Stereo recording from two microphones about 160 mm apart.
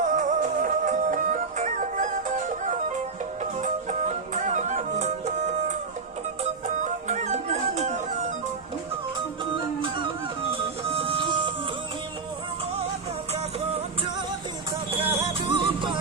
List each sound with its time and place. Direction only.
0.0 s music: 55° right (ahead or behind)
9.6 s music: 30° right (ahead or behind)
14.9 s music: 35° right (ahead or behind)